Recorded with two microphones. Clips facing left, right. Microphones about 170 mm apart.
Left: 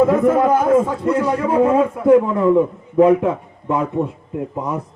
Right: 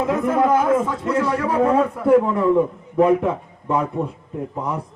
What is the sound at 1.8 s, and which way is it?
Speech, 10° left (ahead or behind).